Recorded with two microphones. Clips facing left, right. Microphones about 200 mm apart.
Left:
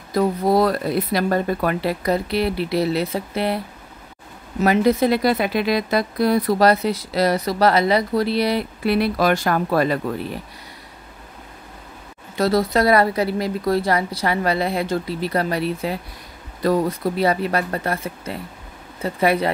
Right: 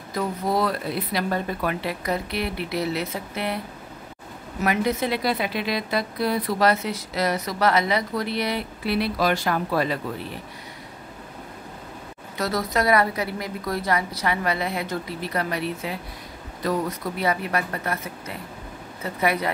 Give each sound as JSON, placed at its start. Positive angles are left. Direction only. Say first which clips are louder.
{"t": 0.1, "sound": "a woman's voice", "louder": "left 7 dB", "side_deg": 35}
{"t": 4.6, "sound": "a woman's voice", "louder": "left 7 dB", "side_deg": 35}
{"t": 8.8, "sound": "speech", "louder": "left 4 dB", "side_deg": 50}
{"t": 12.4, "sound": "a woman's voice", "louder": "left 7 dB", "side_deg": 30}
{"t": 19.1, "sound": "speech", "louder": "left 5 dB", "side_deg": 30}